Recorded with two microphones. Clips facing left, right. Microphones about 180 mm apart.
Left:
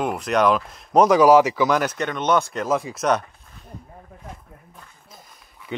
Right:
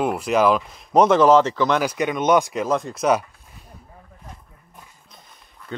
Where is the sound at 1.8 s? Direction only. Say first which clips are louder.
Right 3 dB; 10° right (ahead or behind).